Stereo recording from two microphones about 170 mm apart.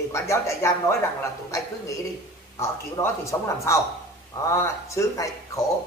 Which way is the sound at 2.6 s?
15° left (ahead or behind).